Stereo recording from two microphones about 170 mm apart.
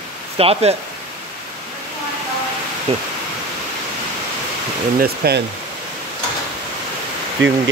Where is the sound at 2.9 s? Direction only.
35° right (ahead or behind).